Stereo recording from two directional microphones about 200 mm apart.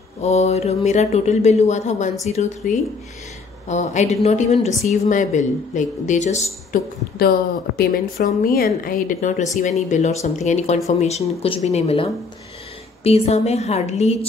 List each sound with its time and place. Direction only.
0.2 s a woman's voice: 35° left (ahead or behind)
7.2 s a woman's voice: 50° left (ahead or behind); by 14.1 s 35° left (ahead or behind)